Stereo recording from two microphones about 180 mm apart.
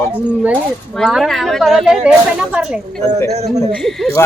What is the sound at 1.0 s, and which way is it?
Speech, centre (ahead or behind).